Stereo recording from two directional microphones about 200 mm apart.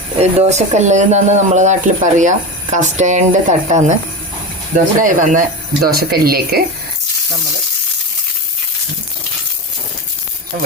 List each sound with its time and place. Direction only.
0.2 s speech: 30° right (ahead or behind); by 6.6 s 50° right (ahead or behind)